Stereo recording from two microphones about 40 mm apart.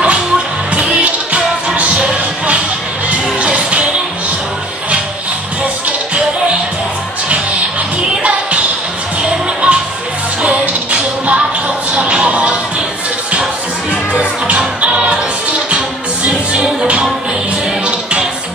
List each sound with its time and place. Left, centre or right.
0.7 s music: right
3.4 s music: right
5.6 s music: right
8.2 s music: right
10.6 s music: right
11.9 s a sound: right
14.8 s music: right